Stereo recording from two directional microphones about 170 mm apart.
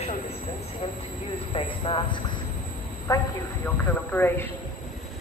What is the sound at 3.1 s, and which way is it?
A woman's voice, 20° left (ahead or behind).